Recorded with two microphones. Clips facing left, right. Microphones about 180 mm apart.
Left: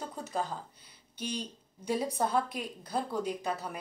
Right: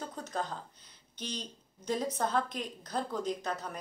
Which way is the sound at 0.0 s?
5° left (ahead or behind).